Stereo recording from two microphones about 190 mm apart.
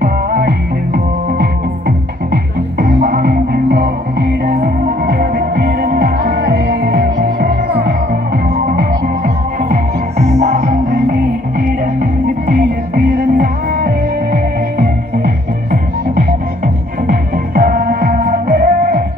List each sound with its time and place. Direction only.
0.0 s music: 50° right (ahead or behind)
8.7 s music: 50° right (ahead or behind)